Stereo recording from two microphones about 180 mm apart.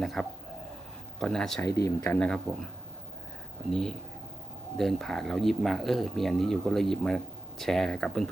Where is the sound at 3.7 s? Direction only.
5° left (ahead or behind).